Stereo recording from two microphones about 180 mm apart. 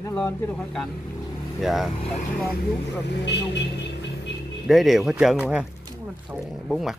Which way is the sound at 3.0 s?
70° left (ahead or behind).